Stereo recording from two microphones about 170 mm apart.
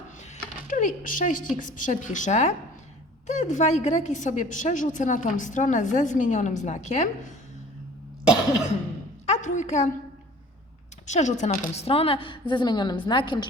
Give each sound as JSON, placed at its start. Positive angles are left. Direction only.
{"t": 0.7, "sound": "a woman's voice", "side_deg": 50}
{"t": 9.2, "sound": "a woman's voice", "side_deg": 45}
{"t": 11.0, "sound": "a woman's voice", "side_deg": 45}